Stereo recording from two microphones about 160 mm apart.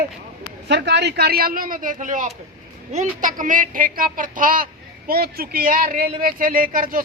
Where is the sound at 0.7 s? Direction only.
90° right; by 7.0 s 60° right (ahead or behind).